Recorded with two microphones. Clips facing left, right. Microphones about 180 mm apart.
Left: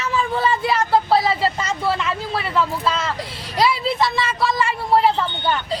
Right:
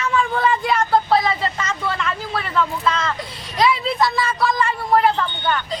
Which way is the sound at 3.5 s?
35° left (ahead or behind).